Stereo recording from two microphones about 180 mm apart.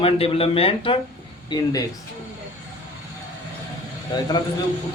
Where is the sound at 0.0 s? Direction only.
30° left (ahead or behind).